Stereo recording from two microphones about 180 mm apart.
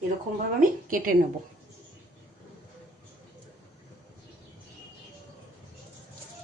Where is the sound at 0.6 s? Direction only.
50° right (ahead or behind).